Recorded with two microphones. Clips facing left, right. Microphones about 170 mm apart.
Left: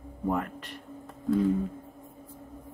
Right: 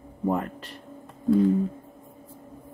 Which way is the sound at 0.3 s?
30° right (ahead or behind).